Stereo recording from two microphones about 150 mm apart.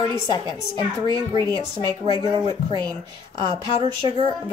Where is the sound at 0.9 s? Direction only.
25° right (ahead or behind).